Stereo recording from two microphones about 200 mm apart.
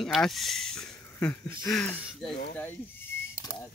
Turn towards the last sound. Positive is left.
turn(degrees=10)  # may be behind; listen again after turning